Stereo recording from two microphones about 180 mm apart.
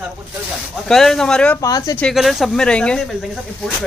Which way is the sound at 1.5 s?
20° left (ahead or behind).